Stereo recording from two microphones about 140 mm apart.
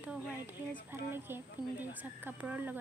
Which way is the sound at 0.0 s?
10° right (ahead or behind).